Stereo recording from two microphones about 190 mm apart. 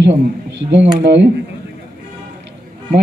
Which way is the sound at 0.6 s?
70° right (ahead or behind).